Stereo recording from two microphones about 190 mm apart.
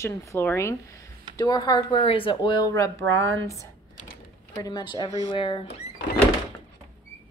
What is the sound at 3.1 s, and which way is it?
Speech, 90° right.